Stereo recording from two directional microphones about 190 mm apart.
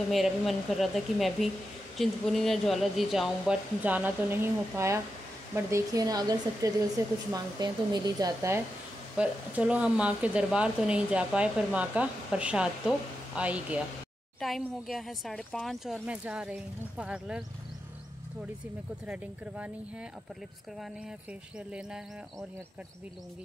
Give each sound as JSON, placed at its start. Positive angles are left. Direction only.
{"t": 0.1, "sound": "speech", "side_deg": 0}
{"t": 9.1, "sound": "speech", "side_deg": -5}
{"t": 19.0, "sound": "speech", "side_deg": -5}